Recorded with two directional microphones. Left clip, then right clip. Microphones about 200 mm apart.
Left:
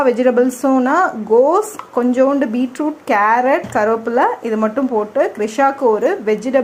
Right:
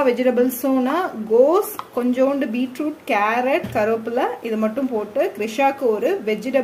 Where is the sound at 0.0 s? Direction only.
15° left (ahead or behind).